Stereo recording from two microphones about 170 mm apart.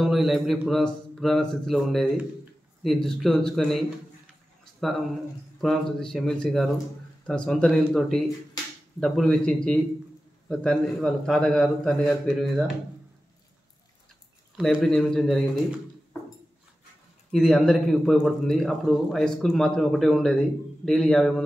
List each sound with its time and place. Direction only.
0.0 s a man's voice: centre (ahead or behind)
5.6 s a man's voice: centre (ahead or behind)
14.6 s a man's voice: centre (ahead or behind)
17.3 s a man's voice: centre (ahead or behind)